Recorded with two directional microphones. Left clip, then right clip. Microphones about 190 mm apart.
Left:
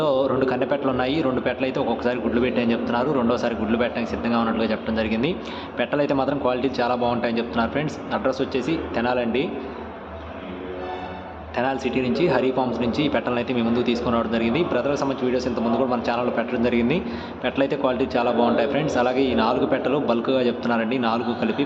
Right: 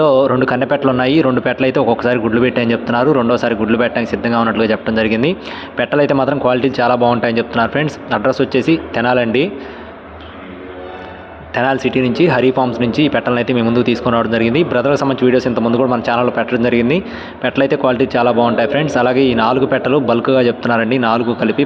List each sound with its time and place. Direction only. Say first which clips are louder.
0.0 s a man's voice: right 9 dB; 35° right (ahead or behind)
11.5 s a man's voice: right 9 dB; 35° right (ahead or behind)